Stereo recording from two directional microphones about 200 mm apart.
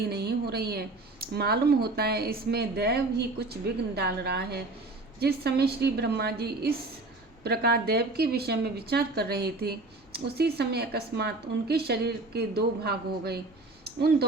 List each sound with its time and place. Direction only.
0.1 s speech: 55° right (ahead or behind)